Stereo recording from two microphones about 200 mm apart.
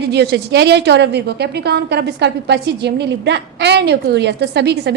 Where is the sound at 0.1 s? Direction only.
55° right (ahead or behind).